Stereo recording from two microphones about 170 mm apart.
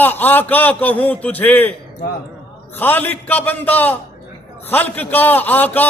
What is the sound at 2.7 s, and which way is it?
A man's voice, 10° left (ahead or behind).